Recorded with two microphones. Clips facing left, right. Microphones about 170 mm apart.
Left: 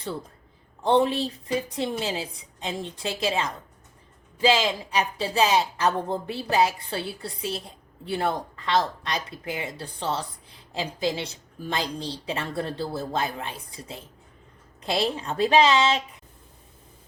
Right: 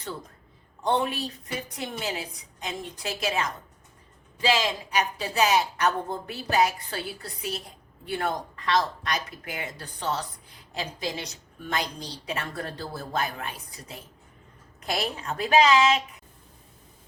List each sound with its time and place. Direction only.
0.8 s speech: 30° left (ahead or behind)